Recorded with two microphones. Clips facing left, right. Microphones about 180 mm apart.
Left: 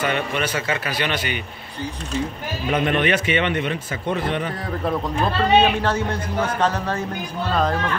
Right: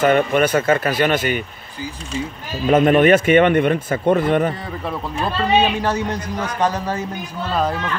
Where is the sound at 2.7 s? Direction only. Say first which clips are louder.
Right 8 dB; 45° right (ahead or behind).